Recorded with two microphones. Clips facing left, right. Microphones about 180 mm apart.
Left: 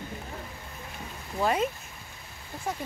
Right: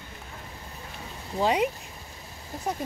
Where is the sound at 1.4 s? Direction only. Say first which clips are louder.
Right 2 dB; 15° right (ahead or behind).